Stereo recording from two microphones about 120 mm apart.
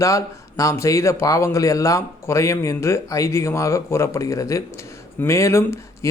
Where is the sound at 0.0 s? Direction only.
25° left (ahead or behind).